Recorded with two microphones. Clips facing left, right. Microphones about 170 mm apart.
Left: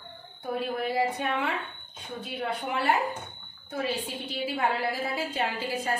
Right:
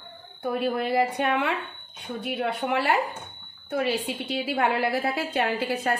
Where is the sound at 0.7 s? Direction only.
70° right (ahead or behind).